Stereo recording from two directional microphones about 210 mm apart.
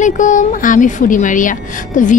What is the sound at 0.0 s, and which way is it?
A woman's voice, 35° left (ahead or behind).